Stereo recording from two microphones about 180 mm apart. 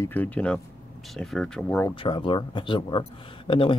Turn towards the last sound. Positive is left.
turn(degrees=30)  # may be behind; listen again after turning